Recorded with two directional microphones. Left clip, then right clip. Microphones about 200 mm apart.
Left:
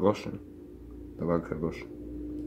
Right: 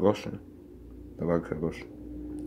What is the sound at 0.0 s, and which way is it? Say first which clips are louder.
Speech: right 1 dB; 5° right (ahead or behind).